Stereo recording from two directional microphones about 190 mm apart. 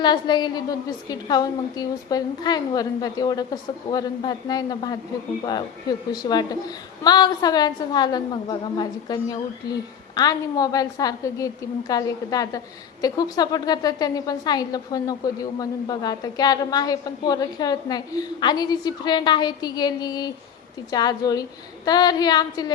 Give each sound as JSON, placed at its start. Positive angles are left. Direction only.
{"t": 0.0, "sound": "a woman's voice", "side_deg": 20}
{"t": 6.1, "sound": "a woman's voice", "side_deg": 20}